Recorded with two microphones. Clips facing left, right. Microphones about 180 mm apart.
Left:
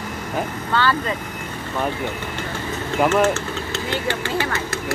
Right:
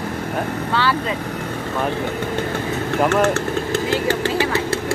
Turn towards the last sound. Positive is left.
turn(degrees=-35)  # may be behind; listen again after turning